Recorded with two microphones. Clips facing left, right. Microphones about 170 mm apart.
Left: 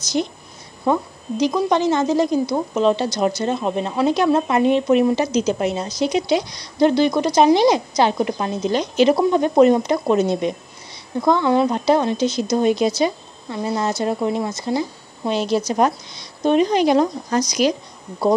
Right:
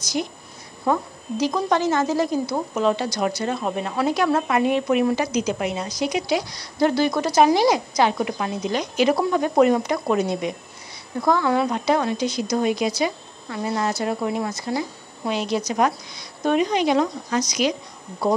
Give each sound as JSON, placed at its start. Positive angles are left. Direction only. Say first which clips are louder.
{"t": 0.9, "sound": "a woman's voice", "louder": "left 3 dB", "side_deg": 25}